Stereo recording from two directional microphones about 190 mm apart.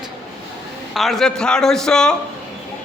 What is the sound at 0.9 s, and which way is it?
Speech, centre (ahead or behind).